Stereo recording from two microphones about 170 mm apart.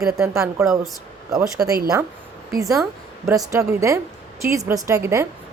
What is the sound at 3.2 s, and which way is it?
A woman's voice, 20° right (ahead or behind).